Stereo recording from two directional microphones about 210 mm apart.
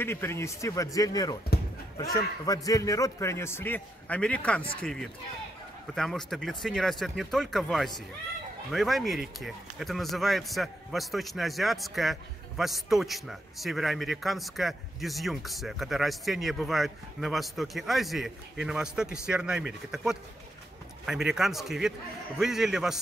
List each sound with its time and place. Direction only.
0.0 s a man's voice: 10° left (ahead or behind)
2.4 s a man's voice: 15° left (ahead or behind); by 22.9 s centre (ahead or behind)